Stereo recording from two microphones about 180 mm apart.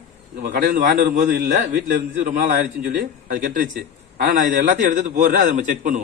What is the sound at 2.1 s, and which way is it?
A man's voice, 45° right (ahead or behind).